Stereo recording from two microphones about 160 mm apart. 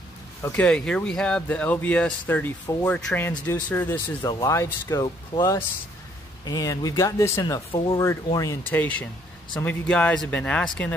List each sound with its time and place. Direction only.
0.4 s speech: 10° left (ahead or behind)
4.2 s speech: 25° left (ahead or behind)
7.7 s speech: 35° left (ahead or behind)
8.4 s speech: 15° left (ahead or behind)